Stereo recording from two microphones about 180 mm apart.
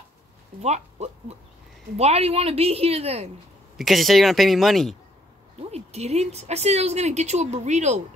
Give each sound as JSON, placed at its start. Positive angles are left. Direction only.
{"t": 0.6, "sound": "a woman's voice", "side_deg": -35}
{"t": 3.7, "sound": "speech", "side_deg": 0}
{"t": 5.7, "sound": "a woman's voice", "side_deg": -35}